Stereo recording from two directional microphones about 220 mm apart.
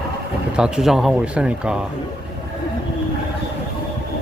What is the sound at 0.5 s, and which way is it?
A man's voice, 5° right (ahead or behind).